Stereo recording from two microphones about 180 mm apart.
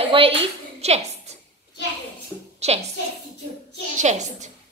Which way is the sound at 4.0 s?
40° right (ahead or behind).